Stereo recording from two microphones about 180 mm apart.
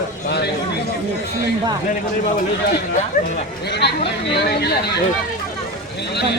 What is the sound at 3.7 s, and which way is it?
Speech, 70° left (ahead or behind).